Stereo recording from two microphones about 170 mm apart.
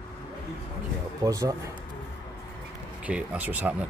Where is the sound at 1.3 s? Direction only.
20° right (ahead or behind).